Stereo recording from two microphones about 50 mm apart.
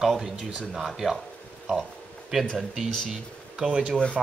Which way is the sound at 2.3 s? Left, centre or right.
Centre.